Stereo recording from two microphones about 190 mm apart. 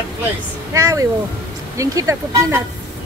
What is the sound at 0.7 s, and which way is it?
Speech, 15° right (ahead or behind).